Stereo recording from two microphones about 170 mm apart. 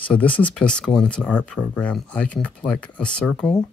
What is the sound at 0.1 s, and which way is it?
Speech, 10° left (ahead or behind).